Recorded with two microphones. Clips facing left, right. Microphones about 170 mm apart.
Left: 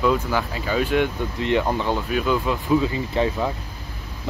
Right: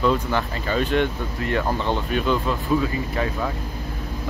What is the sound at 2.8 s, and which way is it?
Speech, 25° left (ahead or behind).